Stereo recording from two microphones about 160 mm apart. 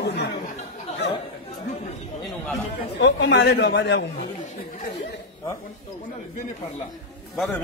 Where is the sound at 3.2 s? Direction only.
90° left.